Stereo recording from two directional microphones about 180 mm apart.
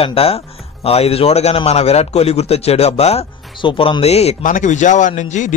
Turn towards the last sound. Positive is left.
turn(degrees=40)  # may be behind; listen again after turning